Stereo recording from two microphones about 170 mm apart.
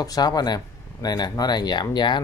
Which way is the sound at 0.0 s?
20° left (ahead or behind).